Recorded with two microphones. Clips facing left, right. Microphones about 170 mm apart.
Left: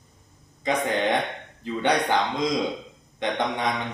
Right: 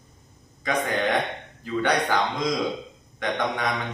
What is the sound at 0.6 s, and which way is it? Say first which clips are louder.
Speech: left 1 dB; 25° left (ahead or behind).